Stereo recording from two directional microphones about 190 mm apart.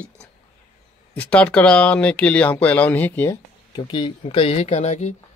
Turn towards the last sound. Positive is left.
turn(degrees=40)  # may be behind; listen again after turning